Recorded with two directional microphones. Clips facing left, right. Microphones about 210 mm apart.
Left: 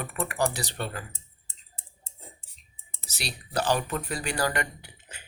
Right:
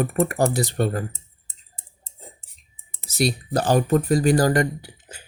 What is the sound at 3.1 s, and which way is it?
Speech, 40° right (ahead or behind).